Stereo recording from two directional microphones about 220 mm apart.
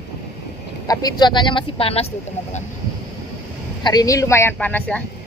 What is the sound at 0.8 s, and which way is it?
Speech, 20° left (ahead or behind).